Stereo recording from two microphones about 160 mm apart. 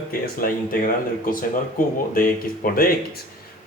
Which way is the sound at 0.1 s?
60° left (ahead or behind).